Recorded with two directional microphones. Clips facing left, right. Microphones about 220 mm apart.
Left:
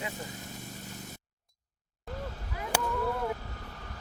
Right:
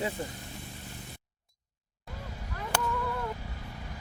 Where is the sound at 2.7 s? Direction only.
10° left (ahead or behind).